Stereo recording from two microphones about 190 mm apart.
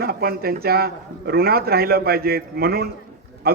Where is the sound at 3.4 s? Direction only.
50° right (ahead or behind).